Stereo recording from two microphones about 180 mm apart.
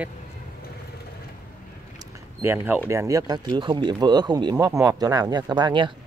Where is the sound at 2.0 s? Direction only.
10° right (ahead or behind).